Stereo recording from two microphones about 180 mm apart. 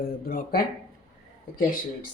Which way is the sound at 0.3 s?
55° left (ahead or behind).